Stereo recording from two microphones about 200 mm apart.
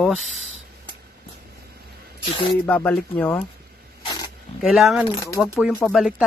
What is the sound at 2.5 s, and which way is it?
Speech, 10° left (ahead or behind).